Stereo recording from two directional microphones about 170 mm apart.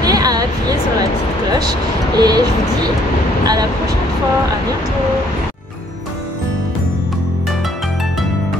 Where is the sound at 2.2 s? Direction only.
25° right (ahead or behind).